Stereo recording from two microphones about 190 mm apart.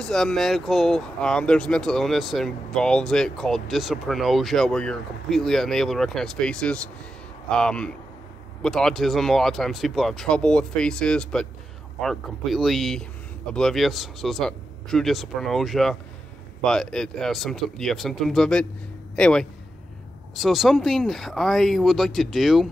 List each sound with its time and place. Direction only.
0.0 s speech: 5° left (ahead or behind)